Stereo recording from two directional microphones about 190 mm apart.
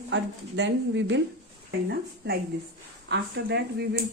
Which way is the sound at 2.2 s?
55° right (ahead or behind).